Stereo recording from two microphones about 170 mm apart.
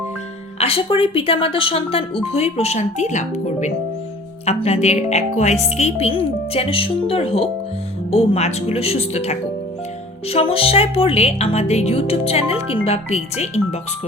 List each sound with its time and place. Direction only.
0.6 s speech: 30° left (ahead or behind)